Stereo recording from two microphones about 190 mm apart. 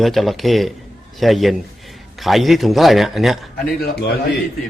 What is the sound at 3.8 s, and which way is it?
Speech, 60° left (ahead or behind).